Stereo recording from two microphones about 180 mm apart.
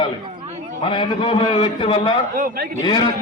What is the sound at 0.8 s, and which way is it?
A man's voice, 25° left (ahead or behind).